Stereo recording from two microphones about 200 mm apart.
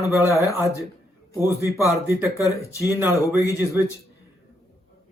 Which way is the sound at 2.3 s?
15° left (ahead or behind).